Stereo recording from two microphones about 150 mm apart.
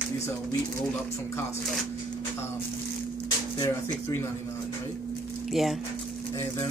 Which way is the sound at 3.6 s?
15° left (ahead or behind).